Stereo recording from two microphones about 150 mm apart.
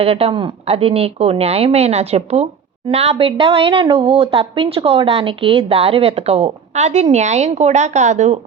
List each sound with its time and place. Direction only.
0.0 s a woman's voice: 40° right (ahead or behind)